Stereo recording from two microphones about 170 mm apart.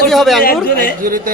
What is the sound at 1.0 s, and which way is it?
Speech, 55° right (ahead or behind).